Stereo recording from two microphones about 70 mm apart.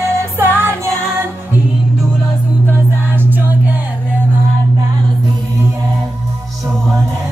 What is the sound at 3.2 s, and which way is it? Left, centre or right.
Music, right.